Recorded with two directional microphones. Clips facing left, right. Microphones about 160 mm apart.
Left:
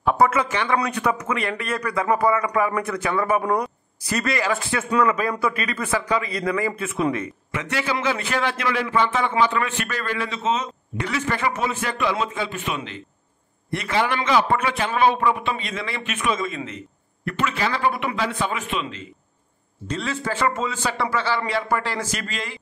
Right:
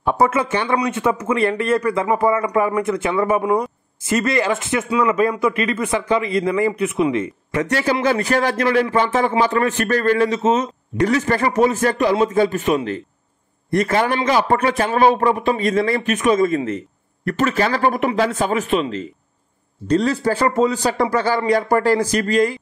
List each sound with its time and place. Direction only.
0.2 s speech: 30° right (ahead or behind)
7.5 s a man's voice: 40° right (ahead or behind)